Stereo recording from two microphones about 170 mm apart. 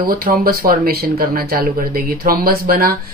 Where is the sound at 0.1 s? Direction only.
60° right (ahead or behind).